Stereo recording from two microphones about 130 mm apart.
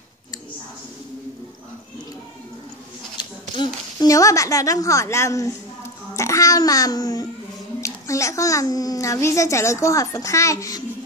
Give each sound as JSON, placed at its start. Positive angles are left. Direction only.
{"t": 3.2, "sound": "a sound", "side_deg": 35}
{"t": 4.1, "sound": "a child's voice", "side_deg": 25}
{"t": 6.1, "sound": "babbling", "side_deg": 25}
{"t": 7.8, "sound": "a child's voice", "side_deg": 25}